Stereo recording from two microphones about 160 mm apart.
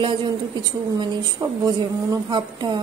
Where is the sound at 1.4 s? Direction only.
25° right (ahead or behind).